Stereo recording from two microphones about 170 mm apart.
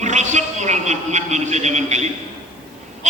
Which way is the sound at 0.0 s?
45° right (ahead or behind).